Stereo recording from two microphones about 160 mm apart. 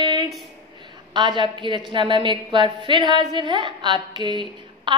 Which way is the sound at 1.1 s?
30° right (ahead or behind).